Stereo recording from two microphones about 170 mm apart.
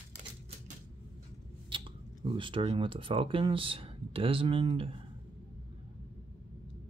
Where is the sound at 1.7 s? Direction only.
30° right (ahead or behind).